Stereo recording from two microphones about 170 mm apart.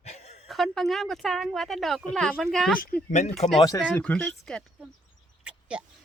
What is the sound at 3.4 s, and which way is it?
Speech, 40° left (ahead or behind).